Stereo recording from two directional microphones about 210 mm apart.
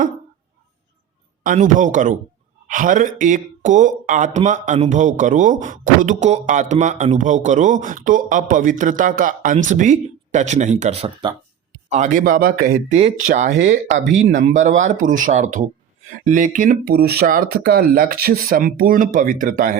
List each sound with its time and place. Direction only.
1.5 s speech: 35° right (ahead or behind)
11.9 s speech: 35° right (ahead or behind)